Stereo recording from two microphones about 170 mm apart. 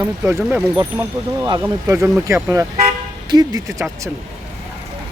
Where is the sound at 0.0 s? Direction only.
15° right (ahead or behind).